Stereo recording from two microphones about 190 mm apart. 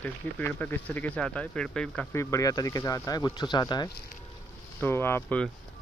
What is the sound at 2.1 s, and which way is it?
Speech, 15° left (ahead or behind).